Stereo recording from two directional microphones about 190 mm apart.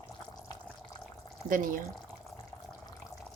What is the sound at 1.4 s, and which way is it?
Speech, 45° right (ahead or behind).